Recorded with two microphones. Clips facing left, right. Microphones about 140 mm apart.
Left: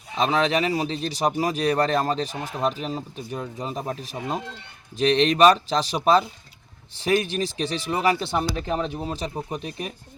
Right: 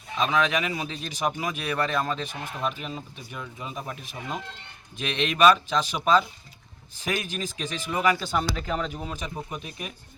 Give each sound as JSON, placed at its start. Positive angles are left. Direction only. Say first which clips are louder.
{"t": 0.2, "sound": "speech", "louder": "left 3 dB", "side_deg": 35}